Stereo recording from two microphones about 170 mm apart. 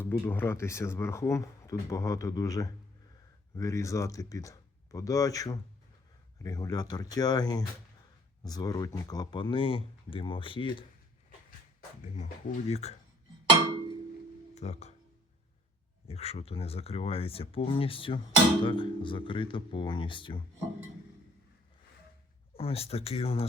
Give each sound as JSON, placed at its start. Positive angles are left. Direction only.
{"t": 0.0, "sound": "speech", "side_deg": 10}
{"t": 12.1, "sound": "speech", "side_deg": 40}
{"t": 14.5, "sound": "speech", "side_deg": 40}
{"t": 16.0, "sound": "speech", "side_deg": 35}
{"t": 22.5, "sound": "speech", "side_deg": 35}